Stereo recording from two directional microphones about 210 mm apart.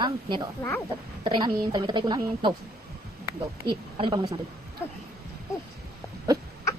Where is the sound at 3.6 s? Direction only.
20° right (ahead or behind).